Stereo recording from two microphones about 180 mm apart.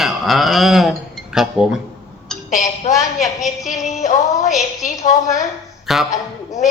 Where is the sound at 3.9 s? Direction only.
40° left (ahead or behind).